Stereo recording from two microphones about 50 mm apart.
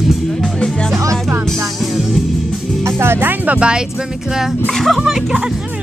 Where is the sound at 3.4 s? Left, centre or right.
Right.